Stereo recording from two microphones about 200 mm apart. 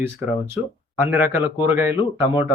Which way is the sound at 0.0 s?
10° right (ahead or behind).